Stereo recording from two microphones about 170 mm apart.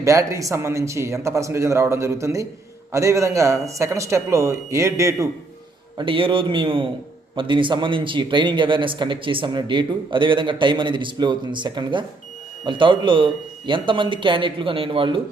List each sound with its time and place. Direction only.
0.0 s speech: 20° right (ahead or behind)
6.0 s a man's voice: 30° right (ahead or behind)